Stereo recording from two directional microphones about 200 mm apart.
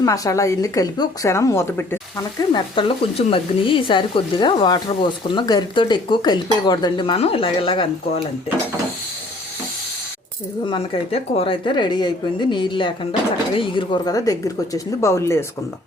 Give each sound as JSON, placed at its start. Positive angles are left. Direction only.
{"t": 0.0, "sound": "speech", "side_deg": 15}
{"t": 2.5, "sound": "speech", "side_deg": 25}
{"t": 10.7, "sound": "speech", "side_deg": 30}